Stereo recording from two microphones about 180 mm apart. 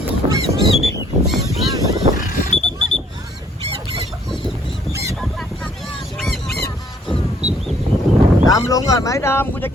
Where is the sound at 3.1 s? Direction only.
20° right (ahead or behind).